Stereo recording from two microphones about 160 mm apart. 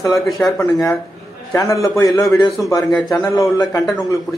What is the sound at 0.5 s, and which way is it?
A man's voice, 20° left (ahead or behind).